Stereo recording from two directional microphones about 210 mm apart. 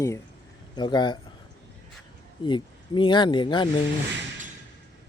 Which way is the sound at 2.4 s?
20° left (ahead or behind).